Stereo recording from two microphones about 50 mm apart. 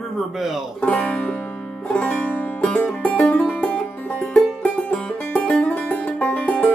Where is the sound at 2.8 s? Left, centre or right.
Left.